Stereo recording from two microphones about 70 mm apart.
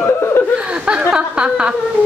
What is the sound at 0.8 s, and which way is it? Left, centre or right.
Speech, centre.